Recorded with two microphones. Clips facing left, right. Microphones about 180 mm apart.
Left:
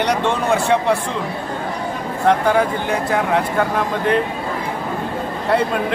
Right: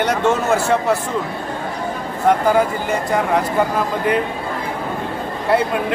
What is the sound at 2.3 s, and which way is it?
Speech, 5° right (ahead or behind).